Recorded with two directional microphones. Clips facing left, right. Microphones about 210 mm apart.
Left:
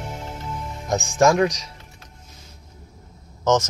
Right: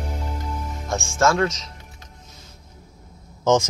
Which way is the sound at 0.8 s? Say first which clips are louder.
Left 3 dB; 20° left (ahead or behind).